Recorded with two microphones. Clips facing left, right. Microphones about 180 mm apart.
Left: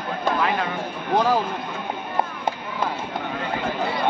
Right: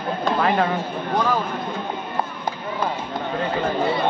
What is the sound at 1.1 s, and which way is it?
Speech, 30° left (ahead or behind).